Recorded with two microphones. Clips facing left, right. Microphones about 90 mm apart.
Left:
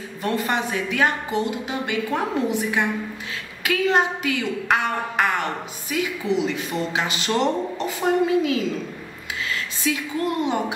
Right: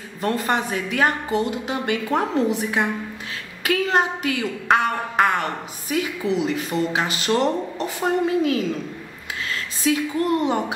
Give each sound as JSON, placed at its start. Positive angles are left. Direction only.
{"t": 0.2, "sound": "a woman's voice", "side_deg": -40}